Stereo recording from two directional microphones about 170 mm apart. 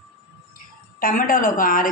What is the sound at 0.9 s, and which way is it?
Speech, 55° left (ahead or behind).